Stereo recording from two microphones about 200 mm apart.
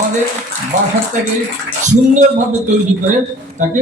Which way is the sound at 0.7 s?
35° right (ahead or behind).